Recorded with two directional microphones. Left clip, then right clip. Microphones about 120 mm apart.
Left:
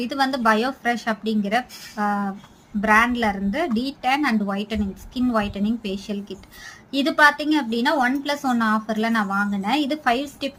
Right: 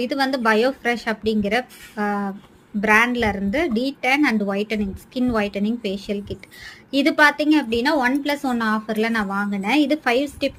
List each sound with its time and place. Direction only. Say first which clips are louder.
0.0 s a woman's voice: even; 25° right (ahead or behind)
2.0 s cutlery: left 1 dB; 40° right (ahead or behind)
2.8 s a woman's voice: right 1 dB; 30° right (ahead or behind)